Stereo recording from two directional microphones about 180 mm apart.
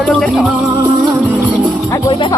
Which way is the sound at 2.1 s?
25° left (ahead or behind).